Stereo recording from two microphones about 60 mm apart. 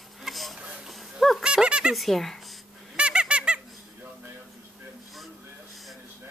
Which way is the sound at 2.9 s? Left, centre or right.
Centre.